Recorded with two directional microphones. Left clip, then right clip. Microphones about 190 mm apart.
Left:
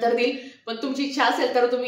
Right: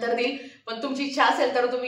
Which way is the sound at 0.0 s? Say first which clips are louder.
Left 4 dB; 20° left (ahead or behind).